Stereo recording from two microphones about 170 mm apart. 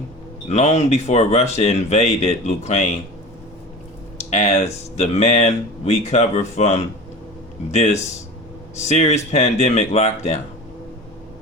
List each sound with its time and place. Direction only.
0.4 s speech: 40° left (ahead or behind)
4.2 s speech: 40° left (ahead or behind)